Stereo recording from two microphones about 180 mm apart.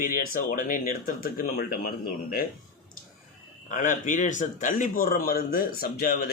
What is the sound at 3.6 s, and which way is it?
A man's voice, 45° left (ahead or behind).